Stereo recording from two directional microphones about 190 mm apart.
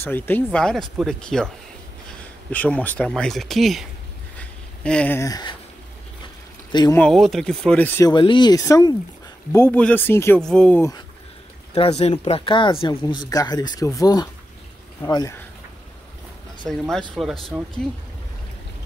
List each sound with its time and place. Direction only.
0.0 s speech: 10° left (ahead or behind)
4.4 s a sound: 5° left (ahead or behind)
6.7 s speech: 20° left (ahead or behind)
7.0 s speech: centre (ahead or behind)
8.1 s speech: 25° left (ahead or behind)
11.7 s speech: 30° left (ahead or behind)
16.6 s speech: centre (ahead or behind)